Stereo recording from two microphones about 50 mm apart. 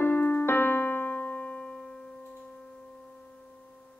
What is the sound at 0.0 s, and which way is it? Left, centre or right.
Keyboard, left.